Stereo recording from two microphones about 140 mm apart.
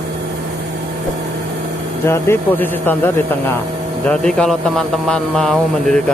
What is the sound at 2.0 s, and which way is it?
Speech, 15° left (ahead or behind).